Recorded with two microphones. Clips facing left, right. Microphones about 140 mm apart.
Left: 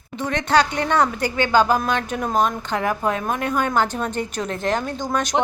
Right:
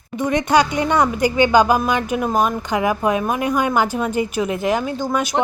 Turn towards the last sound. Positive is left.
turn(degrees=-5)  # may be behind; listen again after turning